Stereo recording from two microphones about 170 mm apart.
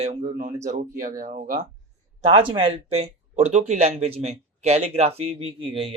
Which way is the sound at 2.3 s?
30° right (ahead or behind).